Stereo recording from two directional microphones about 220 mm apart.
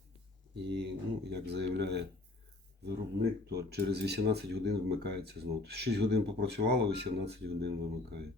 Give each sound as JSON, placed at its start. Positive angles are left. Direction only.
{"t": 0.8, "sound": "speech", "side_deg": -50}